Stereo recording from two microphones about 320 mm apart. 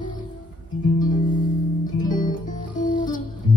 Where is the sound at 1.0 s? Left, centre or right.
Left.